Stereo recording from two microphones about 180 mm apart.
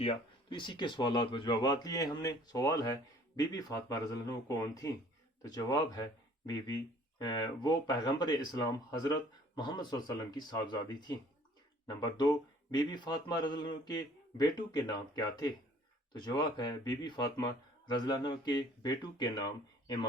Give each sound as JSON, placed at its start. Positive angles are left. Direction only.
{"t": 0.0, "sound": "speech", "side_deg": 30}